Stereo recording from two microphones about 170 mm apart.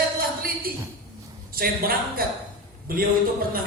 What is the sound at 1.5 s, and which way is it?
A woman's voice, 60° right (ahead or behind).